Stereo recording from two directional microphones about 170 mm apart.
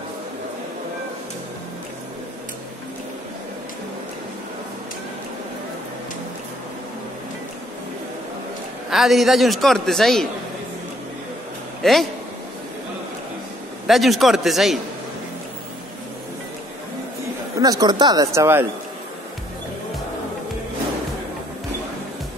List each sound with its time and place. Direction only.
8.9 s a man's voice: centre (ahead or behind)
11.8 s a man's voice: centre (ahead or behind)
13.8 s a man's voice: centre (ahead or behind)
17.6 s speech: 20° right (ahead or behind)